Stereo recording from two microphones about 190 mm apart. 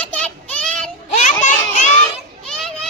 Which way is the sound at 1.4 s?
40° left (ahead or behind).